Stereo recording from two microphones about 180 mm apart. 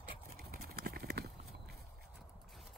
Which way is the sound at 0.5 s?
60° right (ahead or behind).